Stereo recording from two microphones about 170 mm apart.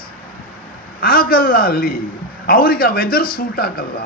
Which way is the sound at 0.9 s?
60° left (ahead or behind).